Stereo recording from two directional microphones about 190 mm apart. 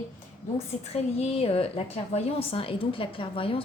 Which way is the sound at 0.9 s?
30° left (ahead or behind).